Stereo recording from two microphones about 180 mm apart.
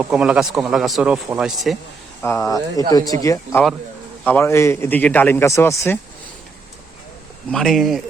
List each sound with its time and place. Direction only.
0.0 s speech: 5° right (ahead or behind)
2.2 s a man's voice: 15° left (ahead or behind)
7.5 s speech: centre (ahead or behind)